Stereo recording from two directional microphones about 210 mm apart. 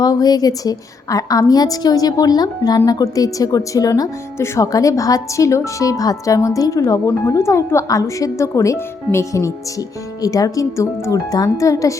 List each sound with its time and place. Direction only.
0.0 s a woman's voice: 20° left (ahead or behind)